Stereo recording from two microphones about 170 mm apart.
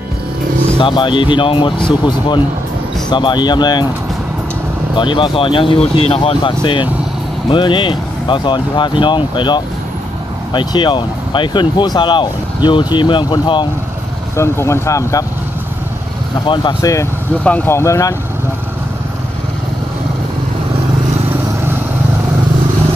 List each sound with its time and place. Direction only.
0.7 s speech: 30° left (ahead or behind)
4.9 s speech: 30° left (ahead or behind)
14.3 s speech: 15° left (ahead or behind)
16.4 s speech: 25° left (ahead or behind)
17.4 s speech: 10° left (ahead or behind)